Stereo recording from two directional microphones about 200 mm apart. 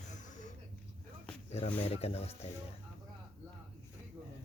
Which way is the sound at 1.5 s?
30° left (ahead or behind).